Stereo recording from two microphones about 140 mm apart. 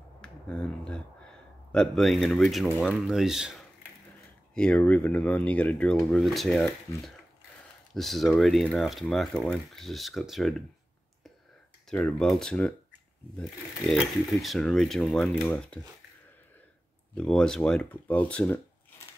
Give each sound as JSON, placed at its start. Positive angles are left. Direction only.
{"t": 0.2, "sound": "speech", "side_deg": 5}
{"t": 4.6, "sound": "speech", "side_deg": 10}
{"t": 11.9, "sound": "speech", "side_deg": 5}
{"t": 13.8, "sound": "speech", "side_deg": 0}
{"t": 17.1, "sound": "speech", "side_deg": 5}